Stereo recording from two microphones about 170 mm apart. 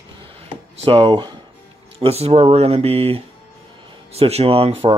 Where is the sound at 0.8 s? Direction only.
30° right (ahead or behind).